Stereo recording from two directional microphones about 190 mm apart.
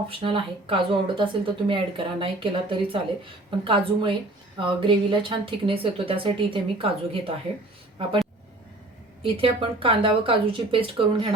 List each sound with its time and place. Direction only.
0.3 s speech: 30° right (ahead or behind)
9.2 s speech: 30° right (ahead or behind)